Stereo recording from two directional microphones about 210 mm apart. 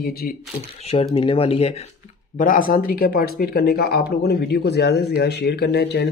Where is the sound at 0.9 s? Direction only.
25° left (ahead or behind).